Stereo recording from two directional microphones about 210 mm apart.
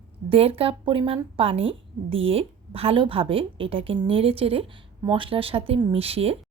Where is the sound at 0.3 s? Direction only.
25° right (ahead or behind).